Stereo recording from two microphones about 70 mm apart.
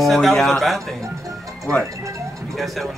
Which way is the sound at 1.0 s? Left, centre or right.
Right.